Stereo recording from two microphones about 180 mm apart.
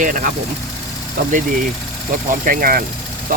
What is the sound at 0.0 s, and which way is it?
Speech, 50° right (ahead or behind).